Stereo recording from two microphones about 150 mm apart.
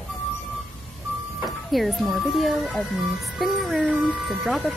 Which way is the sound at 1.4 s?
Centre (ahead or behind).